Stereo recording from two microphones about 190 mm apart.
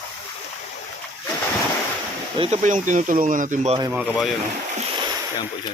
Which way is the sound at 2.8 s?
45° right (ahead or behind).